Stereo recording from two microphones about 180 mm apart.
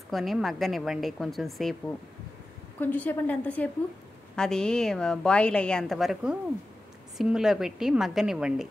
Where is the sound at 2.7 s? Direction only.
10° left (ahead or behind).